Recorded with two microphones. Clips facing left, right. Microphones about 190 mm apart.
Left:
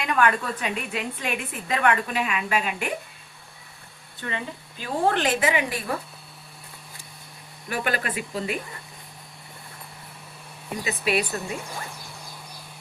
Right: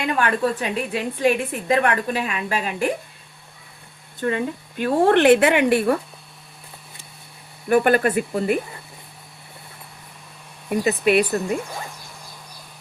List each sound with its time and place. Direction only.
0.0 s a woman's voice: 30° right (ahead or behind)
4.2 s speech: 50° right (ahead or behind); by 6.0 s 65° right (ahead or behind)
7.7 s speech: 50° right (ahead or behind)
10.7 s speech: 55° right (ahead or behind)